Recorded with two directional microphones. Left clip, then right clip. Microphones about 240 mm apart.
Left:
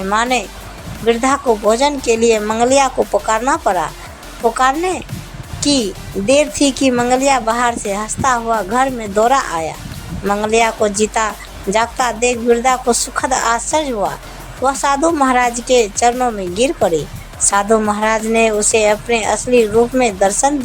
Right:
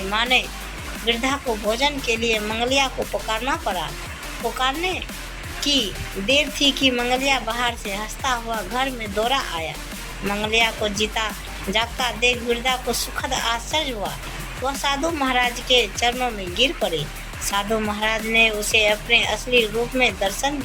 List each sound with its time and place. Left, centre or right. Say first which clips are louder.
0.1 s speech: left 4 dB; left